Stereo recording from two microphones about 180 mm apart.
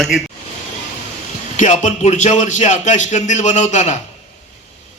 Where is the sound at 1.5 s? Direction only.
45° left (ahead or behind).